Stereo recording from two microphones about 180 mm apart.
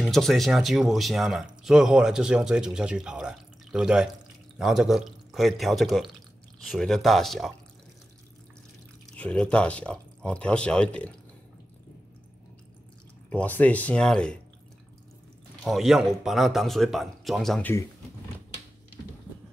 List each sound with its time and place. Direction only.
0.0 s speech: centre (ahead or behind)
9.1 s speech: 5° left (ahead or behind)
13.3 s speech: 10° left (ahead or behind)
15.6 s speech: centre (ahead or behind)